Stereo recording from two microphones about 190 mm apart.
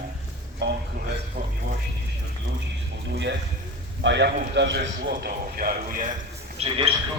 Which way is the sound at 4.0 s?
65° right (ahead or behind).